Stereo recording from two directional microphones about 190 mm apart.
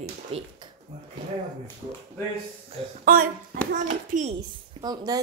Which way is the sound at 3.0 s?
50° right (ahead or behind).